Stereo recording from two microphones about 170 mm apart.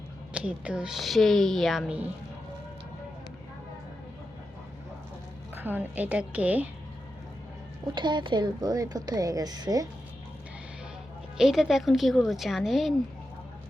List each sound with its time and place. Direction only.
0.3 s speech: 5° right (ahead or behind)
5.5 s a woman's voice: 10° right (ahead or behind)
7.9 s speech: 25° right (ahead or behind)
11.3 s speech: centre (ahead or behind)